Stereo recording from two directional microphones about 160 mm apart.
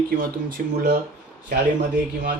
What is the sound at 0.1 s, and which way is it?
Speech, 65° right (ahead or behind).